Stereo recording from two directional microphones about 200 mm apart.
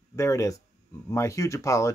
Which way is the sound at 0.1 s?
15° left (ahead or behind).